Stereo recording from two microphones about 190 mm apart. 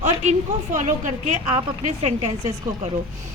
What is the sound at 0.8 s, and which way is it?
A woman's voice, 40° right (ahead or behind).